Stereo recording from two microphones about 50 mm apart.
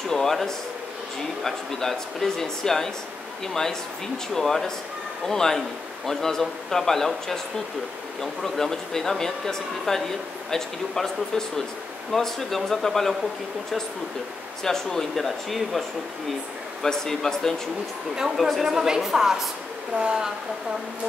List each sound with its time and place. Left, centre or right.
0.1 s speech: centre
14.6 s speech: centre
16.8 s speech: centre
18.1 s a woman's voice: centre
20.0 s speech: centre